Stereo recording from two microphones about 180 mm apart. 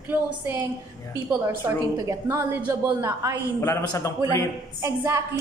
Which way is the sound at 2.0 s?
15° right (ahead or behind).